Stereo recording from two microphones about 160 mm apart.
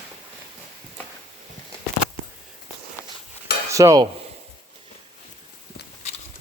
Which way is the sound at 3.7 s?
20° right (ahead or behind).